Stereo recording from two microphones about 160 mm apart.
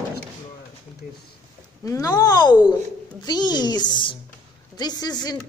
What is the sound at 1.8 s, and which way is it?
A woman's voice, 20° left (ahead or behind).